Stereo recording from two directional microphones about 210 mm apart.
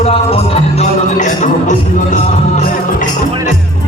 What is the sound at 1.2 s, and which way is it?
Speech, 35° left (ahead or behind).